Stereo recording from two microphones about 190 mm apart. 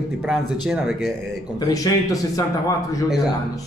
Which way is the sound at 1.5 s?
20° left (ahead or behind).